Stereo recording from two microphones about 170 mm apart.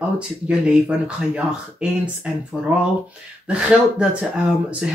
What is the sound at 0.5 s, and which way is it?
Speech, 5° right (ahead or behind).